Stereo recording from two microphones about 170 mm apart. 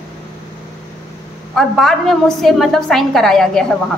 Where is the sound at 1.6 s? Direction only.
Centre (ahead or behind).